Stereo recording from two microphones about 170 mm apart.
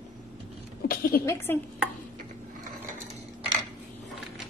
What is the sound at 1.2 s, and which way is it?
Speech, 15° left (ahead or behind).